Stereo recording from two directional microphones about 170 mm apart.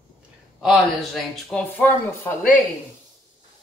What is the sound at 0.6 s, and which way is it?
A man's voice, centre (ahead or behind).